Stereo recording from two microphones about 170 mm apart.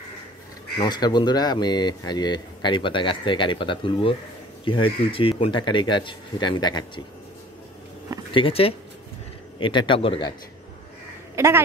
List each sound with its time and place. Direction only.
0.7 s speech: 25° left (ahead or behind)
8.3 s speech: 30° left (ahead or behind)
11.3 s a woman's voice: 15° right (ahead or behind)